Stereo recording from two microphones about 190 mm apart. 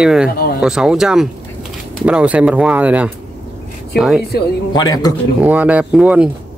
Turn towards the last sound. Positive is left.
turn(degrees=-5)  # may be behind; listen again after turning